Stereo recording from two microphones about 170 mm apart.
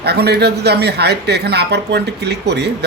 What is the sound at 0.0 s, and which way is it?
A woman's voice, 70° right (ahead or behind).